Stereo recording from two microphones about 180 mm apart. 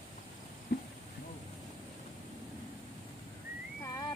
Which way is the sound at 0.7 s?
60° left (ahead or behind).